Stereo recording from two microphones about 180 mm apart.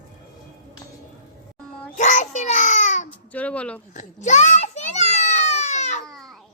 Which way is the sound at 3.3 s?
10° left (ahead or behind).